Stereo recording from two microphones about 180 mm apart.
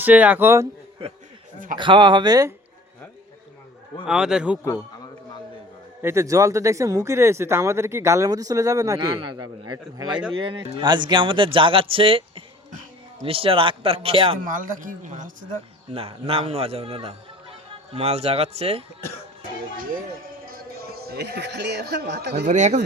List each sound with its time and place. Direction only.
0.0 s speech: 10° right (ahead or behind)
1.5 s a man's voice: 45° right (ahead or behind)
1.8 s speech: 25° right (ahead or behind)
4.0 s a man's voice: 5° right (ahead or behind)
6.0 s a man's voice: 15° right (ahead or behind); by 14.3 s 30° right (ahead or behind)
14.4 s a man's voice: 50° right (ahead or behind)
16.0 s a man's voice: 30° right (ahead or behind)
19.7 s a man's voice: 50° right (ahead or behind); by 22.4 s 70° right (ahead or behind)
22.4 s a man's voice: 40° right (ahead or behind)